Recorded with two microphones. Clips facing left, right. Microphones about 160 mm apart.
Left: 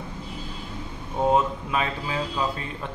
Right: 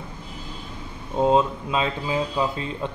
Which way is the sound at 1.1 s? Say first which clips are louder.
Right 2 dB; 20° right (ahead or behind).